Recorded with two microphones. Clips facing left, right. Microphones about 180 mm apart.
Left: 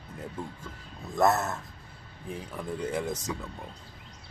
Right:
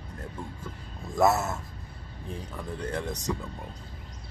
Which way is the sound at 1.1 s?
Centre (ahead or behind).